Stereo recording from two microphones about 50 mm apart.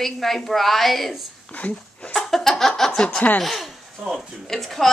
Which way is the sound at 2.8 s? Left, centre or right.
Centre.